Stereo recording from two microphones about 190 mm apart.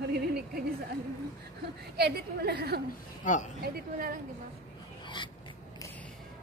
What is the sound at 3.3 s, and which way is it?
Speech, 40° left (ahead or behind).